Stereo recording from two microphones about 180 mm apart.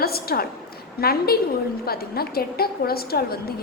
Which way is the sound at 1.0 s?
60° left (ahead or behind).